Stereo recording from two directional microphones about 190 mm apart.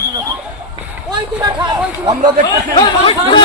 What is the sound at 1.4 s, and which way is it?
Chatter, 20° right (ahead or behind).